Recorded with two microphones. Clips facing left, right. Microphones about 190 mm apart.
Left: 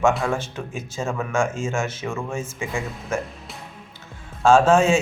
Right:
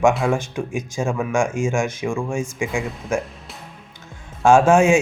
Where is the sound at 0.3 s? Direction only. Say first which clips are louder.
Right 4 dB; 15° right (ahead or behind).